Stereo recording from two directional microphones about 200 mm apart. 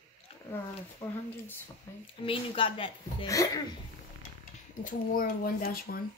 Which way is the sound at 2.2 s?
25° left (ahead or behind).